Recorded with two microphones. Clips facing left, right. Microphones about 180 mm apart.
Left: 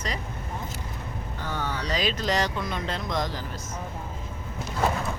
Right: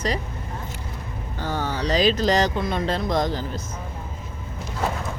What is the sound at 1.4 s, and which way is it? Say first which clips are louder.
Speech: right 5 dB; 30° right (ahead or behind).